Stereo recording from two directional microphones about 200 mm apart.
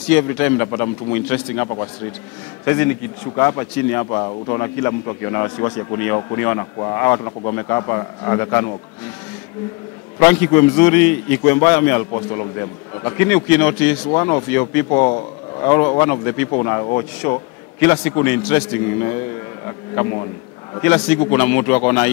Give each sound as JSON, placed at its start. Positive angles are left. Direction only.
{"t": 0.2, "sound": "speech", "side_deg": 15}
{"t": 10.1, "sound": "speech", "side_deg": 15}
{"t": 12.1, "sound": "speech", "side_deg": 25}
{"t": 14.9, "sound": "speech", "side_deg": 25}
{"t": 17.7, "sound": "speech", "side_deg": 10}
{"t": 20.7, "sound": "speech", "side_deg": 10}